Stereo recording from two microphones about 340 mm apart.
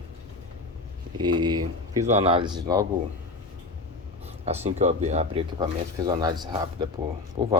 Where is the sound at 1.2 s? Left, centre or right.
Centre.